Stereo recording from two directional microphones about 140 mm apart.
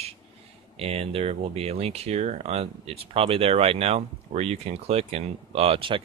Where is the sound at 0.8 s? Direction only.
45° right (ahead or behind).